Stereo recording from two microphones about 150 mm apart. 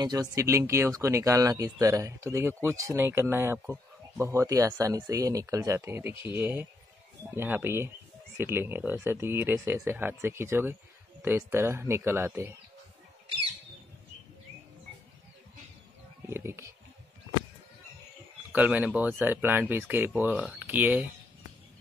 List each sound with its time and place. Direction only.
0.0 s speech: 25° right (ahead or behind)
16.3 s speech: 15° right (ahead or behind)
18.5 s speech: 10° right (ahead or behind)